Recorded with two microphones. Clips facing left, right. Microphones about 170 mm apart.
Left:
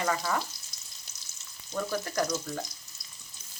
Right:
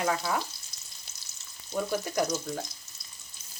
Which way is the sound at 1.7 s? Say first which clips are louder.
Right 2 dB; 15° right (ahead or behind).